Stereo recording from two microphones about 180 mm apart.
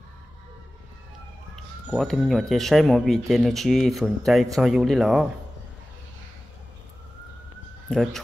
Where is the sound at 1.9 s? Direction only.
Centre (ahead or behind).